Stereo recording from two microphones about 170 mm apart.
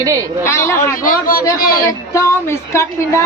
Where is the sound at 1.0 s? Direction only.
55° left (ahead or behind).